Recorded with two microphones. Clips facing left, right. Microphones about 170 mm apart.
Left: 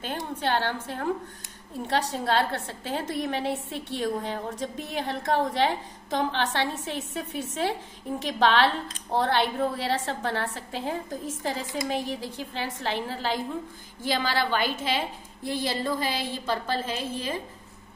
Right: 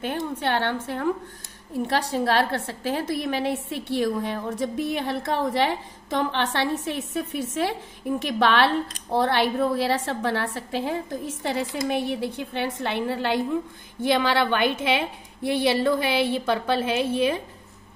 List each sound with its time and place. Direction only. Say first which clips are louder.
0.0 s a woman's voice: right 3 dB; 60° right (ahead or behind)
1.9 s a woman's voice: right 2 dB; 70° right (ahead or behind)